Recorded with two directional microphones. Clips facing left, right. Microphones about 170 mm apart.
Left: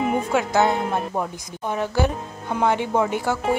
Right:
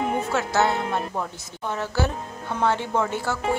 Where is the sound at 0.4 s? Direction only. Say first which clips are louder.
Left 2 dB; 15° left (ahead or behind).